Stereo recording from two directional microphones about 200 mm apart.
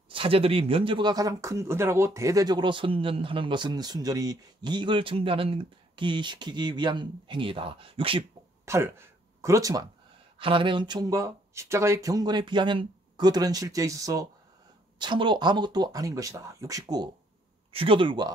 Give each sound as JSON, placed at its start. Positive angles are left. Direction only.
{"t": 0.1, "sound": "speech", "side_deg": -25}
{"t": 8.6, "sound": "speech", "side_deg": -10}